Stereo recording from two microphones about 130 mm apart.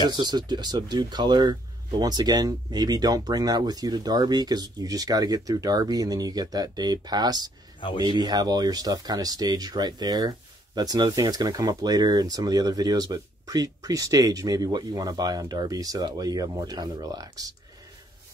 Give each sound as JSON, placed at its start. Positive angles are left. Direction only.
{"t": 0.1, "sound": "speech", "side_deg": -35}